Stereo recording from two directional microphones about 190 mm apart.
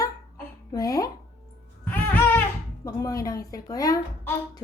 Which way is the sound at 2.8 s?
20° left (ahead or behind).